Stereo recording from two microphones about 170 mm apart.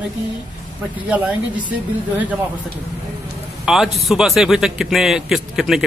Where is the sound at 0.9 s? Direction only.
10° right (ahead or behind).